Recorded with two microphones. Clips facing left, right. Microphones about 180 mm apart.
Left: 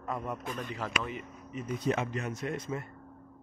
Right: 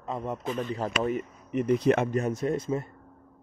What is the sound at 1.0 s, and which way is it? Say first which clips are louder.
Speech: right 10 dB; 45° right (ahead or behind).